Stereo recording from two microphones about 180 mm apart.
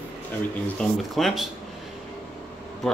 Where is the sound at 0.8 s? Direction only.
Centre (ahead or behind).